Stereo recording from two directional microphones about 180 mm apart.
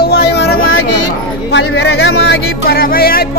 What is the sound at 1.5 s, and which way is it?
Music, 80° left.